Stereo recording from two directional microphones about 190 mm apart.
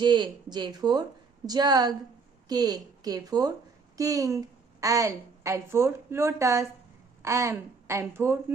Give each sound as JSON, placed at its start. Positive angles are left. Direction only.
{"t": 0.0, "sound": "a woman's voice", "side_deg": -25}